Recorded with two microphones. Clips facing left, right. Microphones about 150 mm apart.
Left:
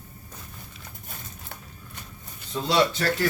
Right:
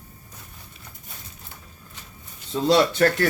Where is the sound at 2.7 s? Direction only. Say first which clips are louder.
Right 5 dB; 55° right (ahead or behind).